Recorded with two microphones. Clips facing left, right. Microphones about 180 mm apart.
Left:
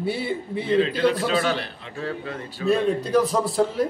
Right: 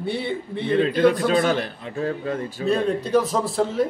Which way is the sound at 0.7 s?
50° right (ahead or behind).